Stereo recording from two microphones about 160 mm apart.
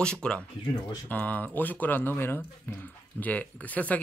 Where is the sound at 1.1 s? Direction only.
10° left (ahead or behind).